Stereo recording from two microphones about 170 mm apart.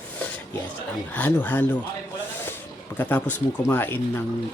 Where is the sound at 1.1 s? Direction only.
10° left (ahead or behind).